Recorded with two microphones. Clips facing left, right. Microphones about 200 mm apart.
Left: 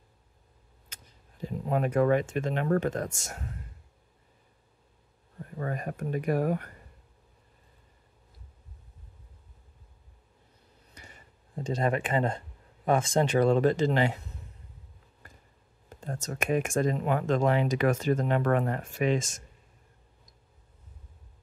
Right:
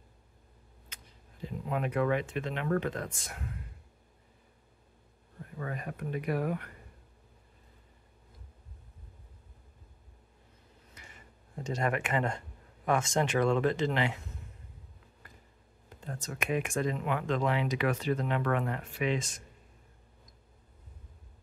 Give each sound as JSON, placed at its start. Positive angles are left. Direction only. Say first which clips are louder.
{"t": 1.4, "sound": "speech", "louder": "left 5 dB", "side_deg": 45}
{"t": 5.6, "sound": "speech", "louder": "left 4 dB", "side_deg": 45}
{"t": 11.0, "sound": "a sound", "louder": "left 3 dB", "side_deg": 35}
{"t": 12.8, "sound": "speech", "louder": "left 4 dB", "side_deg": 35}
{"t": 16.0, "sound": "speech", "louder": "left 4 dB", "side_deg": 45}